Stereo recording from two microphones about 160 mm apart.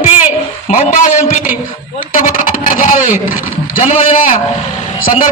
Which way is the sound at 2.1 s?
55° left (ahead or behind).